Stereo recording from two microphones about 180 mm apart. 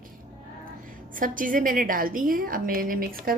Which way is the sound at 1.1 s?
50° right (ahead or behind).